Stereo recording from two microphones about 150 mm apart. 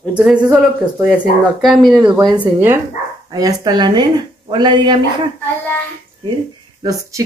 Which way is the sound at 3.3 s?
25° right (ahead or behind).